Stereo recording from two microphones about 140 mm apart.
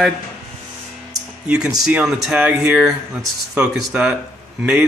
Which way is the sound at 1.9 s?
5° right (ahead or behind).